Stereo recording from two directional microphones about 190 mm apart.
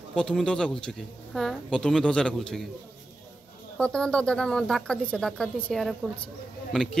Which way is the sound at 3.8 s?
5° left (ahead or behind).